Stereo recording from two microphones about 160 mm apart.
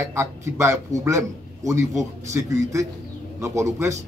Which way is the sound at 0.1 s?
15° right (ahead or behind).